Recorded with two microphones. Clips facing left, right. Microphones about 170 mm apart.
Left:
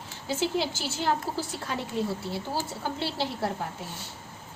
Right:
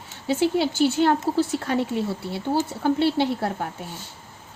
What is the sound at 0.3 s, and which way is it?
Speech, 60° right (ahead or behind).